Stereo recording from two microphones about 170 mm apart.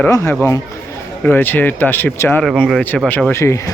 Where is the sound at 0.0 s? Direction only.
15° left (ahead or behind).